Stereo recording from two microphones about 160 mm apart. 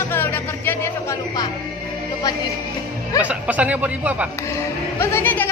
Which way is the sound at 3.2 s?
10° right (ahead or behind).